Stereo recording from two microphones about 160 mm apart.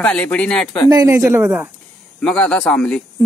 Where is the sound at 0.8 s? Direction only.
20° right (ahead or behind).